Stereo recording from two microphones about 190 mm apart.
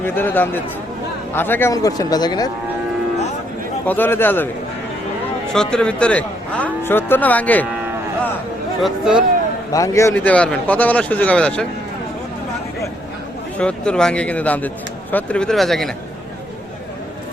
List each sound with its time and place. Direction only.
0.0 s a man's voice: 10° left (ahead or behind)
3.8 s a man's voice: 10° left (ahead or behind)
5.5 s a man's voice: 5° left (ahead or behind)
8.8 s a man's voice: 5° right (ahead or behind)
9.7 s a man's voice: 15° left (ahead or behind)
13.6 s a man's voice: 5° left (ahead or behind)